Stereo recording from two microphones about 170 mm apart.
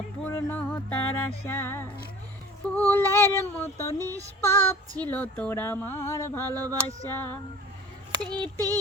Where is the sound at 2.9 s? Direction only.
15° left (ahead or behind).